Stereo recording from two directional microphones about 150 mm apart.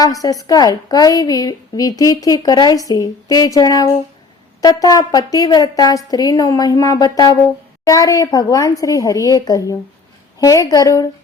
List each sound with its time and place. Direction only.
0.0 s a woman's voice: 25° left (ahead or behind)